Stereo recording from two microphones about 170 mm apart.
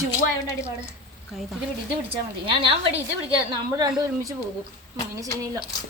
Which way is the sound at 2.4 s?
30° right (ahead or behind).